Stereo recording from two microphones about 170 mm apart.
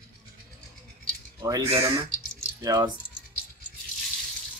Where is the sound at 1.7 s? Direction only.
35° right (ahead or behind).